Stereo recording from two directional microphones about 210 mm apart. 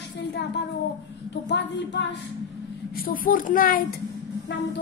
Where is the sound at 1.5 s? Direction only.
55° left (ahead or behind).